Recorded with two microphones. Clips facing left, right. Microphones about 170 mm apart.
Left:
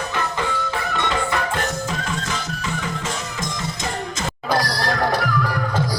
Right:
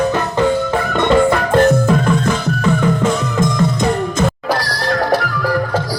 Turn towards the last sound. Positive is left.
turn(degrees=-55)  # may be behind; listen again after turning